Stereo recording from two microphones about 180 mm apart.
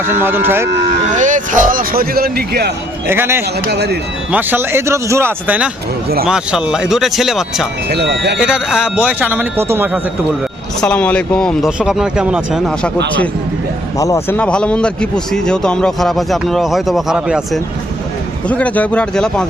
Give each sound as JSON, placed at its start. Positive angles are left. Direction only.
{"t": 0.0, "sound": "speech", "side_deg": -10}
{"t": 0.7, "sound": "speech", "side_deg": -45}
{"t": 3.1, "sound": "speech", "side_deg": -15}
{"t": 3.7, "sound": "speech", "side_deg": -65}
{"t": 4.3, "sound": "a man's voice", "side_deg": -10}
{"t": 7.9, "sound": "speech", "side_deg": -65}
{"t": 8.4, "sound": "speech", "side_deg": -5}
{"t": 10.8, "sound": "a man's voice", "side_deg": 5}
{"t": 14.0, "sound": "a man's voice", "side_deg": 15}
{"t": 18.4, "sound": "speech", "side_deg": 5}